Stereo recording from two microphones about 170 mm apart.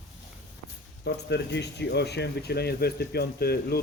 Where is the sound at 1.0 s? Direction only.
85° left.